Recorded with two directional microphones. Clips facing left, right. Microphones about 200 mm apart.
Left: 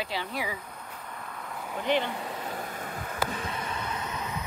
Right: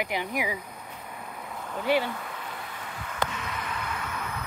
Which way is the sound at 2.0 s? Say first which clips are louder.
Left 1 dB; 25° left (ahead or behind).